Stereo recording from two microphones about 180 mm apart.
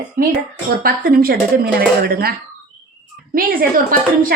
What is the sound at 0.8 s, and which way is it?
A woman's voice, 55° right (ahead or behind).